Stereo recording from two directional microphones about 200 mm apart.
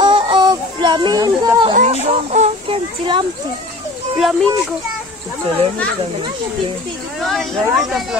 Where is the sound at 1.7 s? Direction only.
35° right (ahead or behind).